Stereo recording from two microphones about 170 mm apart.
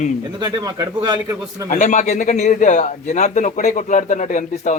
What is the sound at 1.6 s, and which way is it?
A man's voice, 45° left (ahead or behind).